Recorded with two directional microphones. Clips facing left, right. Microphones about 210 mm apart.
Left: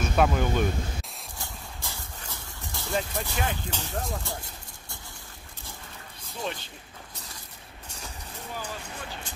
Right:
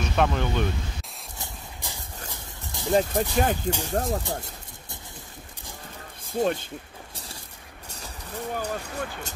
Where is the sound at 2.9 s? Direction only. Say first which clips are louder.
Right 8 dB; 40° right (ahead or behind).